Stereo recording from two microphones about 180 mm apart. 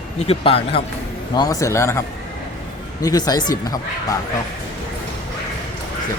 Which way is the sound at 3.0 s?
20° left (ahead or behind).